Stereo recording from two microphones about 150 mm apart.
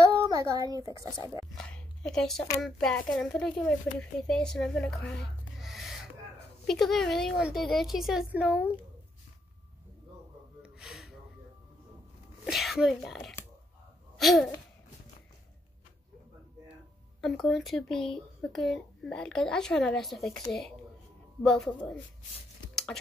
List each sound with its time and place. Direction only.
0.0 s speech: 20° right (ahead or behind)
2.0 s speech: 5° left (ahead or behind)
10.6 s gasp: centre (ahead or behind)
12.4 s speech: centre (ahead or behind)
14.1 s a sound: centre (ahead or behind)
17.2 s speech: centre (ahead or behind)